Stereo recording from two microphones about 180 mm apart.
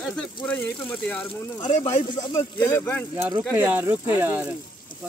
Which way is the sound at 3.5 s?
10° right (ahead or behind).